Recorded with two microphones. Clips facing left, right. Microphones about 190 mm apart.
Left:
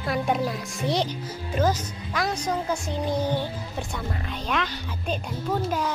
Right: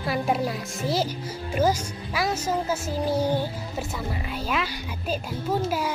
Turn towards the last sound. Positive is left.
turn(degrees=-10)  # may be behind; listen again after turning